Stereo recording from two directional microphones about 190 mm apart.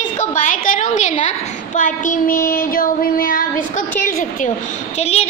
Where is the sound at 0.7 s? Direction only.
40° left (ahead or behind).